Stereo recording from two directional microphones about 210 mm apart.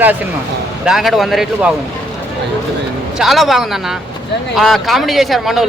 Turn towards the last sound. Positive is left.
turn(degrees=0)  # may be behind; listen again after turning